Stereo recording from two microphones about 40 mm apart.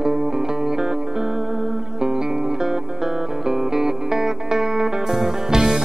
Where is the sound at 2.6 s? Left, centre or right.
Centre.